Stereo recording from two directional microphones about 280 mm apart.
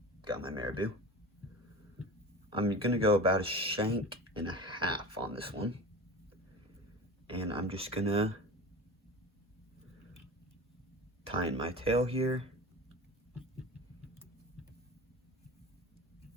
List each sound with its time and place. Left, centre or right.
0.2 s speech: centre
2.5 s speech: centre
7.3 s speech: centre
11.2 s speech: right